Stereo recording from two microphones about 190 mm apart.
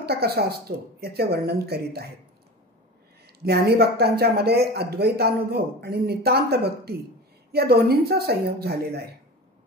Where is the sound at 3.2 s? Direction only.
55° right (ahead or behind).